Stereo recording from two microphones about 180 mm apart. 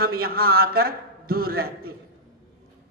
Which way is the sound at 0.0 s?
55° right (ahead or behind).